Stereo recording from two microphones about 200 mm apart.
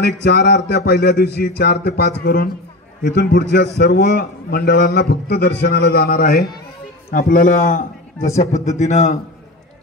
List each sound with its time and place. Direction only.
0.0 s a man's voice: 55° left (ahead or behind); by 9.2 s 35° left (ahead or behind)